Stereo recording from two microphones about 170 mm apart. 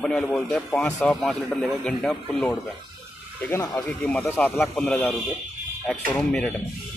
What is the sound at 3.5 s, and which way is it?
A man's voice, 15° left (ahead or behind).